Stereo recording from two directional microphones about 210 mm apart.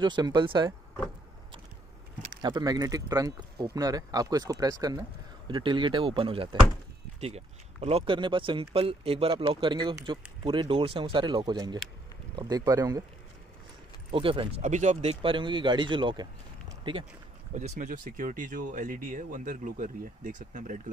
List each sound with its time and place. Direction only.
0.0 s speech: 20° right (ahead or behind)
2.4 s speech: 20° right (ahead or behind)
14.1 s speech: 25° right (ahead or behind)
17.6 s speech: 35° right (ahead or behind)